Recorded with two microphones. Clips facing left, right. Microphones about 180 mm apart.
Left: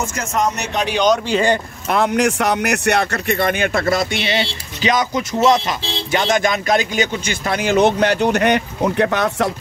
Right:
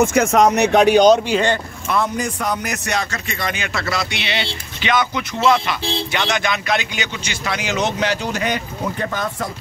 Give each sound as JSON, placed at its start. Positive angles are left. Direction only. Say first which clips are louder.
{"t": 0.0, "sound": "speech", "louder": "right 7 dB", "side_deg": -60}
{"t": 1.9, "sound": "speech", "louder": "left 5 dB", "side_deg": 70}